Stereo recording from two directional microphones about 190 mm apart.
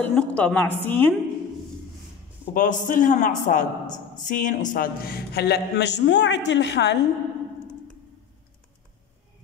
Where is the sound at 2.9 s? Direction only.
45° left (ahead or behind); by 7.0 s 65° left (ahead or behind).